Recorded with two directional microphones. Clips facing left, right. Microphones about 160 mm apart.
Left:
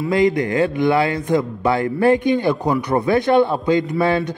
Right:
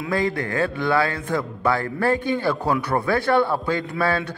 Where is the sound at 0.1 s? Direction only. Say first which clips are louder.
Left 6 dB; 20° left (ahead or behind).